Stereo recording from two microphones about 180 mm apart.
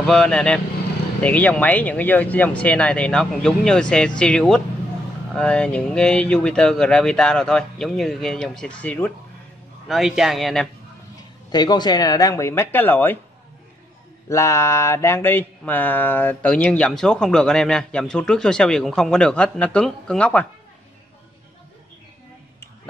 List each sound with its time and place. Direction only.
0.0 s speech: 5° left (ahead or behind)
9.8 s speech: centre (ahead or behind)
11.5 s speech: 25° left (ahead or behind)
14.3 s speech: 15° left (ahead or behind)